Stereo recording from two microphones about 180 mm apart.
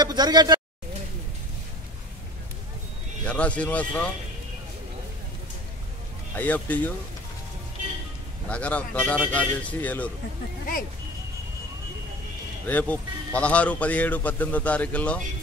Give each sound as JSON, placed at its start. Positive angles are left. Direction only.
{"t": 0.0, "sound": "speech", "side_deg": -25}
{"t": 3.3, "sound": "a man's voice", "side_deg": 5}
{"t": 6.3, "sound": "a man's voice", "side_deg": 10}
{"t": 8.5, "sound": "a man's voice", "side_deg": 5}
{"t": 12.6, "sound": "a man's voice", "side_deg": 10}